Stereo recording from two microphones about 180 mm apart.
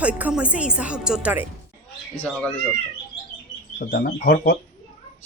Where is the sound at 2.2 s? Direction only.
5° left (ahead or behind).